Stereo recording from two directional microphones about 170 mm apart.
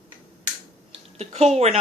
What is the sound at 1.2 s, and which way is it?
Speech, 40° right (ahead or behind).